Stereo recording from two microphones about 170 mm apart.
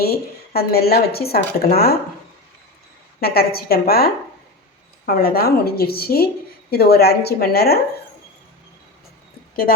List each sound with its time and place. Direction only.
0.0 s speech: 65° left (ahead or behind)
3.2 s a woman's voice: 65° left (ahead or behind)